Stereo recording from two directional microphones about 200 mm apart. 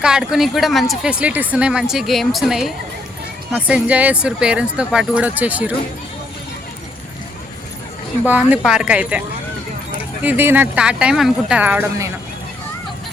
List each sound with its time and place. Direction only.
0.0 s speech: 5° right (ahead or behind)
8.3 s speech: 5° right (ahead or behind)
10.2 s speech: 10° right (ahead or behind)